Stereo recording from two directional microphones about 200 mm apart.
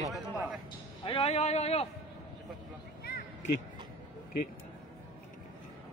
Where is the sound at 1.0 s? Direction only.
25° left (ahead or behind).